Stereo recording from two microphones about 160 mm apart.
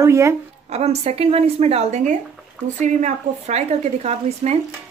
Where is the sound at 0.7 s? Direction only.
40° right (ahead or behind).